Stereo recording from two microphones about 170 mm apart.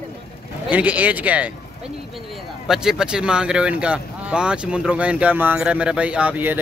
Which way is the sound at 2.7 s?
5° right (ahead or behind).